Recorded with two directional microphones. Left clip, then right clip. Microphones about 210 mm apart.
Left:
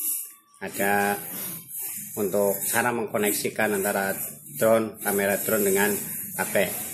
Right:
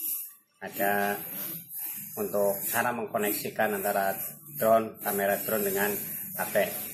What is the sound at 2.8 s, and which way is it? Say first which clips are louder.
Speech: left 5 dB; 50° left (ahead or behind).